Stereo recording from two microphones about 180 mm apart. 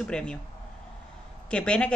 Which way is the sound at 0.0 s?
5° left (ahead or behind).